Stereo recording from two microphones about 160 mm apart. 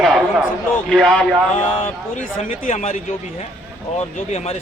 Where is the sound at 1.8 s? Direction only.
50° left (ahead or behind).